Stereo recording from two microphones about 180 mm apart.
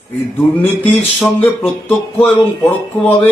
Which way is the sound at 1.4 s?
10° left (ahead or behind).